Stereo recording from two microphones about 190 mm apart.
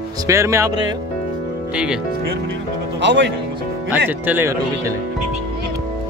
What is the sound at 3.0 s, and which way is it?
Speech, 65° right (ahead or behind).